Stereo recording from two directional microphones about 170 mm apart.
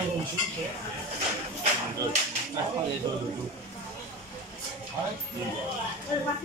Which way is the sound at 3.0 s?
25° right (ahead or behind).